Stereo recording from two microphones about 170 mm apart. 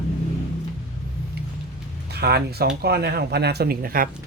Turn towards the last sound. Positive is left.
turn(degrees=-60)  # may be behind; listen again after turning